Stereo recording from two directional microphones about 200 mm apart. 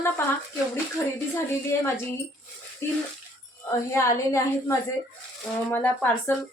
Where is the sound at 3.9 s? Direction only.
15° left (ahead or behind).